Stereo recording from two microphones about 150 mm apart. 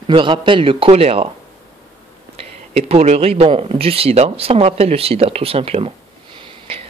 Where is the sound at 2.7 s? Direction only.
45° right (ahead or behind).